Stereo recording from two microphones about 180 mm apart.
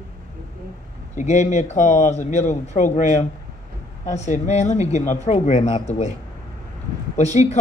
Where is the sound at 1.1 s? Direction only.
40° left (ahead or behind).